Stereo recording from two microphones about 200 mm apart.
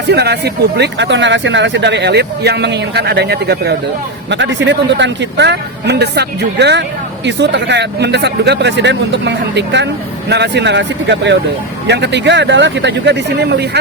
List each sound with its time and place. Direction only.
0.1 s speech: 55° right (ahead or behind)